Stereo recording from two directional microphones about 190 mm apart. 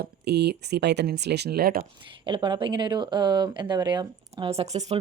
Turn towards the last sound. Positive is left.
turn(degrees=-35)  # may be behind; listen again after turning